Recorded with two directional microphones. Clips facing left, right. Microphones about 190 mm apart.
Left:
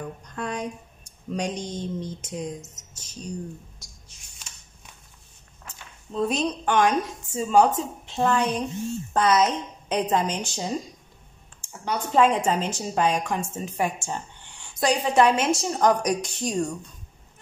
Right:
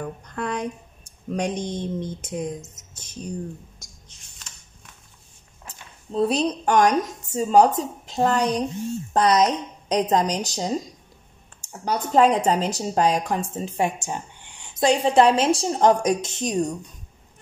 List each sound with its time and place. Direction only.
0.0 s speech: 55° right (ahead or behind)
5.7 s a woman's voice: 35° right (ahead or behind)